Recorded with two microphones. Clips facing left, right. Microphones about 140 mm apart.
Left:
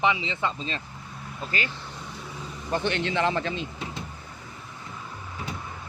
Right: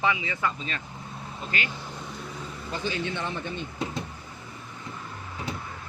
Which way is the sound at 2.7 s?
70° left (ahead or behind).